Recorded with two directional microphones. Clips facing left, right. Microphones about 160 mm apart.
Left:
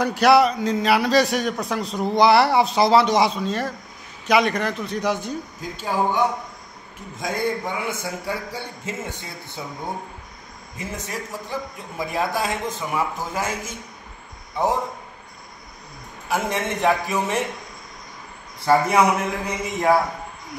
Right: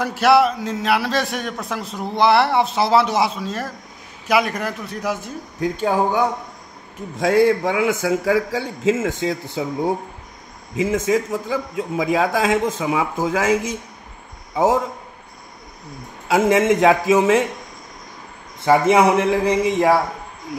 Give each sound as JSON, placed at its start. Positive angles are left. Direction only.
{"t": 0.0, "sound": "a man's voice", "side_deg": 0}
{"t": 5.6, "sound": "speech", "side_deg": -50}
{"t": 7.2, "sound": "a man's voice", "side_deg": -80}
{"t": 10.8, "sound": "a man's voice", "side_deg": -90}
{"t": 16.3, "sound": "a man's voice", "side_deg": -90}
{"t": 18.6, "sound": "speech", "side_deg": -25}